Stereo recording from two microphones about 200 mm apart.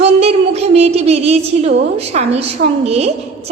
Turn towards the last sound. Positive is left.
turn(degrees=-30)  # may be behind; listen again after turning